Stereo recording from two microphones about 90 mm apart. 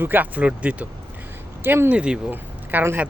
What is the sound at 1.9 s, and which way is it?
Speech, 10° right (ahead or behind).